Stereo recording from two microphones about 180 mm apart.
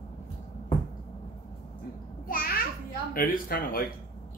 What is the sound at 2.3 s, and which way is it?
Children playing, 50° left (ahead or behind).